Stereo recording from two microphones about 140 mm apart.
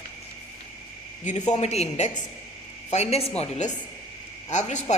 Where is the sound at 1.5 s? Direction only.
50° left (ahead or behind).